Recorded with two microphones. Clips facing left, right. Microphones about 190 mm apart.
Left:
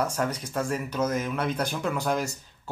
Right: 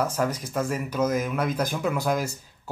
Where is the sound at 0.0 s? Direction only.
5° right (ahead or behind).